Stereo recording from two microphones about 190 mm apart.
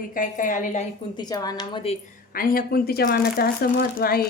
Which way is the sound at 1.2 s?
20° left (ahead or behind).